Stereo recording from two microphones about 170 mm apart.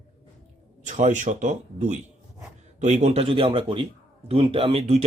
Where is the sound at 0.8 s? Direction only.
45° right (ahead or behind).